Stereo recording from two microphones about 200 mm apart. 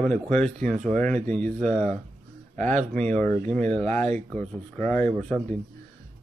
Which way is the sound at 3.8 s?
35° right (ahead or behind).